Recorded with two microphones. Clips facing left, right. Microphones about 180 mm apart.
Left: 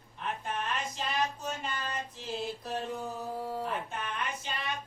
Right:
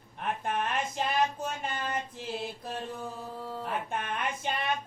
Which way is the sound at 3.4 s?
10° left (ahead or behind).